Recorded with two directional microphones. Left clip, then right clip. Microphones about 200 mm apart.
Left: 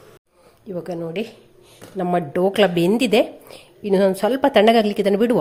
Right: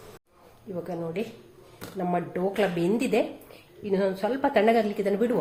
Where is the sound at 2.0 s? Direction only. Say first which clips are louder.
Left 8 dB; 50° left (ahead or behind).